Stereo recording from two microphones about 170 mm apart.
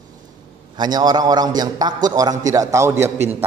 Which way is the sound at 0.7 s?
25° right (ahead or behind).